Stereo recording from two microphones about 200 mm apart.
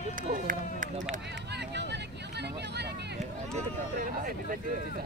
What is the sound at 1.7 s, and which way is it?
Vehicle, 60° right (ahead or behind).